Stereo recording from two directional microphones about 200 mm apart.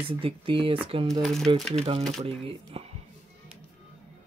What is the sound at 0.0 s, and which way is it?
Speech, 30° right (ahead or behind).